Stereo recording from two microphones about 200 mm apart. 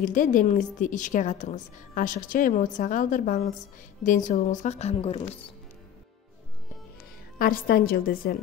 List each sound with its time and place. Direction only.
0.0 s a woman's voice: 40° left (ahead or behind)
7.3 s a woman's voice: 50° left (ahead or behind)